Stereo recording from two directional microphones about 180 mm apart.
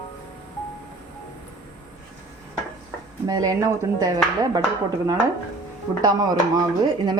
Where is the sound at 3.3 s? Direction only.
20° right (ahead or behind).